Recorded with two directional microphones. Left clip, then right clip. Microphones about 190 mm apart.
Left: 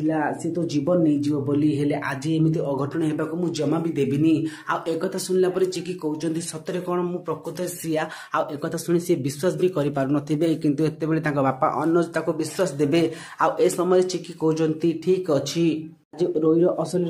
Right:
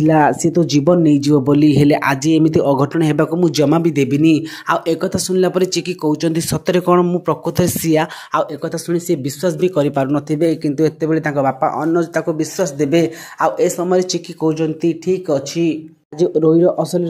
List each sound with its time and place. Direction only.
0.0 s speech: 50° right (ahead or behind)
8.8 s speech: 20° right (ahead or behind)
9.6 s speech: 35° right (ahead or behind); by 16.3 s 15° right (ahead or behind)
16.3 s speech: 30° right (ahead or behind)